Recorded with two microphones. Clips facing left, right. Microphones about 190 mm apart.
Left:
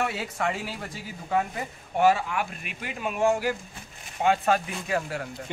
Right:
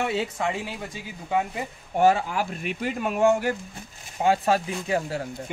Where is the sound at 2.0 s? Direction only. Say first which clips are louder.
Right 2 dB; 40° right (ahead or behind).